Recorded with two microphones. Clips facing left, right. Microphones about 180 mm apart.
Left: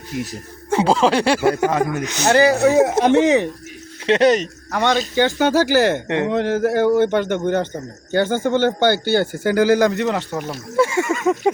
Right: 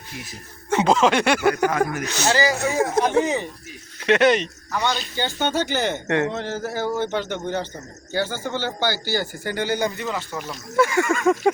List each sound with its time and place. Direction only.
0.7 s speech: 30° left (ahead or behind)
2.2 s speech: 60° left (ahead or behind); by 3.5 s 75° left (ahead or behind)
4.0 s speech: 30° left (ahead or behind)
4.7 s speech: 70° left (ahead or behind)
5.1 s speech: 90° left; by 6.0 s 70° left (ahead or behind)
6.1 s a sound: 20° left (ahead or behind)
6.3 s a man's voice: 60° left (ahead or behind)
9.4 s speech: 85° left; by 10.4 s 65° left (ahead or behind)
10.8 s a sound: 25° left (ahead or behind)